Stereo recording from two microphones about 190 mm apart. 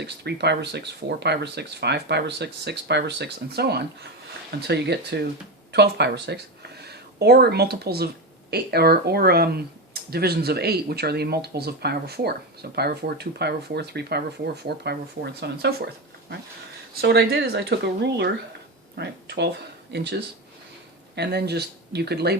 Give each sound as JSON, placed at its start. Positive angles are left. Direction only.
{"t": 0.0, "sound": "speech", "side_deg": -60}
{"t": 16.9, "sound": "speech", "side_deg": -60}
{"t": 21.2, "sound": "speech", "side_deg": -60}